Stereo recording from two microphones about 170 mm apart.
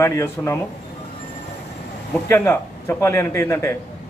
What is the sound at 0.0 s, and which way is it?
Speech, 15° left (ahead or behind).